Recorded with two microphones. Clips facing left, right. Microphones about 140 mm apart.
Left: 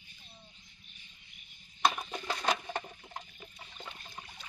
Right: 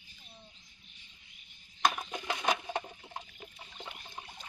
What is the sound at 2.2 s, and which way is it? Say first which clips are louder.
Wood: even; 10° right (ahead or behind).